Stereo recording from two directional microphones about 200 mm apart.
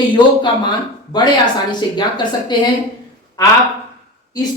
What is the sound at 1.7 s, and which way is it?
Speech, 20° left (ahead or behind).